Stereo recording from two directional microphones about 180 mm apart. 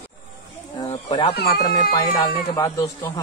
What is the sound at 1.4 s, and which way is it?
Speech, 60° left (ahead or behind).